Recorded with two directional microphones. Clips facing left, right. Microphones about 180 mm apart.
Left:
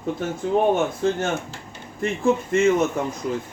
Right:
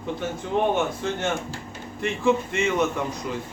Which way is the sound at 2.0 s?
45° left (ahead or behind).